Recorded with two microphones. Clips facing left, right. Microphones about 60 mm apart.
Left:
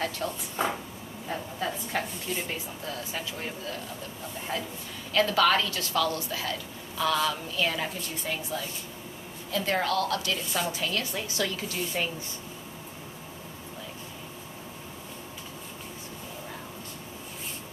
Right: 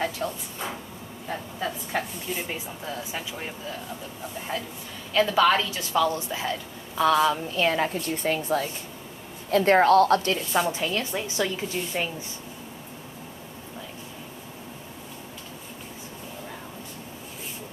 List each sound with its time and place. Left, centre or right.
0.2 s speech: centre
0.6 s a sound: left
1.3 s a woman's voice: centre; by 10.6 s right
10.7 s a woman's voice: right